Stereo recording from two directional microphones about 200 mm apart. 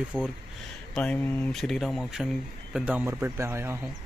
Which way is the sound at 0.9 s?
5° left (ahead or behind).